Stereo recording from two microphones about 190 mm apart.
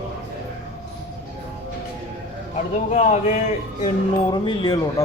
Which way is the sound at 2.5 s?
35° left (ahead or behind).